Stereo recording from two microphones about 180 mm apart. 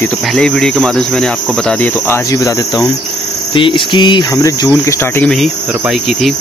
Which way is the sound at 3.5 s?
30° left (ahead or behind).